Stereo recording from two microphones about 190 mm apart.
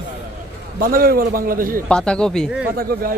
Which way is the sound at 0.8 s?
50° right (ahead or behind).